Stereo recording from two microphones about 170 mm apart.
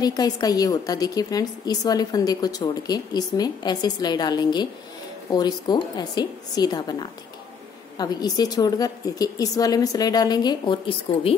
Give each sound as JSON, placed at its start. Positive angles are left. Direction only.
{"t": 0.0, "sound": "a woman's voice", "side_deg": 20}